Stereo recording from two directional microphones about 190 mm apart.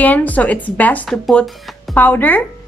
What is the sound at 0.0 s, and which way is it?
A woman's voice, 10° left (ahead or behind).